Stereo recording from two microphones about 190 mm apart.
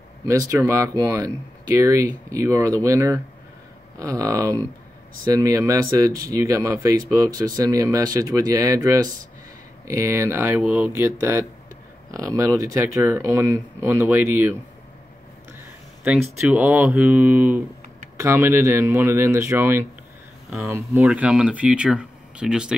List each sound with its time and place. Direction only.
0.2 s speech: 20° right (ahead or behind)
16.1 s speech: 5° right (ahead or behind)